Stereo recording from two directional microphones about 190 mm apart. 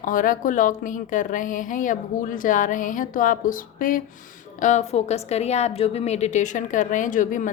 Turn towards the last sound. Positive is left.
turn(degrees=45)  # may be behind; listen again after turning